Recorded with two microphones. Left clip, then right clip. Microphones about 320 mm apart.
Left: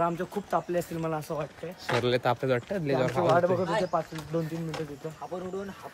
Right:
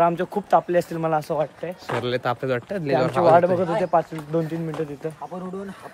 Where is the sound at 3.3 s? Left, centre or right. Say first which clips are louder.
Right 9 dB; right.